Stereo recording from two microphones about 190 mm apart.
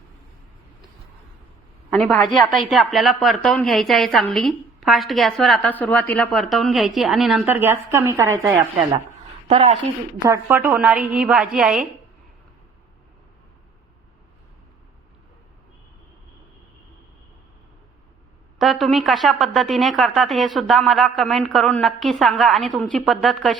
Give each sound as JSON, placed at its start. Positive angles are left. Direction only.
{"t": 1.9, "sound": "a woman's voice", "side_deg": 5}
{"t": 9.5, "sound": "speech", "side_deg": -35}
{"t": 10.2, "sound": "a woman's voice", "side_deg": -15}
{"t": 18.6, "sound": "a woman's voice", "side_deg": 0}